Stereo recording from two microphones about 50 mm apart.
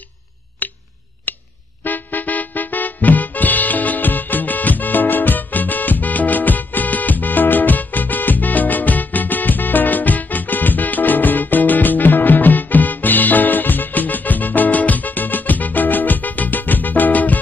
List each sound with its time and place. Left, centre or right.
1.9 s music: left